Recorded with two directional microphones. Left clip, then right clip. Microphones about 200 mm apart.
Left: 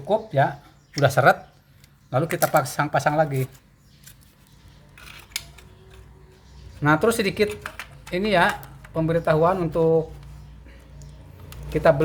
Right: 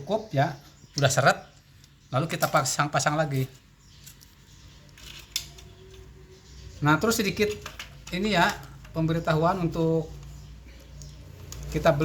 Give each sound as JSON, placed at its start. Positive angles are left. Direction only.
{"t": 0.1, "sound": "speech", "side_deg": 30}
{"t": 6.8, "sound": "speech", "side_deg": 35}
{"t": 11.7, "sound": "speech", "side_deg": 35}